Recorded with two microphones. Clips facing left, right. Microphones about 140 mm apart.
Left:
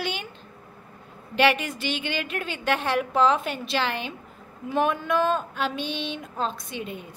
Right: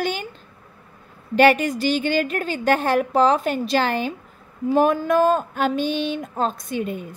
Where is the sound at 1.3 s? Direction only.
45° right (ahead or behind).